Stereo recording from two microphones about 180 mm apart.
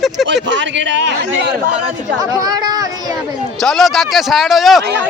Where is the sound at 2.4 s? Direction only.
20° right (ahead or behind).